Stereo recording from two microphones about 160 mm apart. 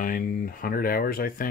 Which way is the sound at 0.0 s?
60° left (ahead or behind).